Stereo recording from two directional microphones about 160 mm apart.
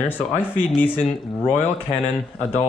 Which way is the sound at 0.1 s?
10° left (ahead or behind).